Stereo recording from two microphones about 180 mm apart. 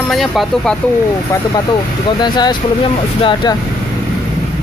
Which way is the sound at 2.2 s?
25° left (ahead or behind).